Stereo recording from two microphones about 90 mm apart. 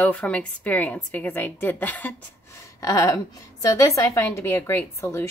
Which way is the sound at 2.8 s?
35° left (ahead or behind).